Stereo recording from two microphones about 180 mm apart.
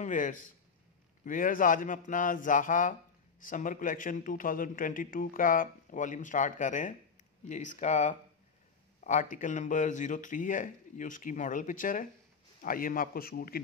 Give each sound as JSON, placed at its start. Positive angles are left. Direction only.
{"t": 0.0, "sound": "a man's voice", "side_deg": 45}